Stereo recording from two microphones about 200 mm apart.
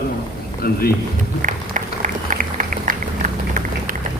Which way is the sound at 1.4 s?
40° right (ahead or behind).